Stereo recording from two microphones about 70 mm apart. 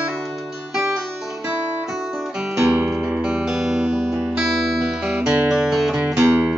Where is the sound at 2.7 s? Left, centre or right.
Centre.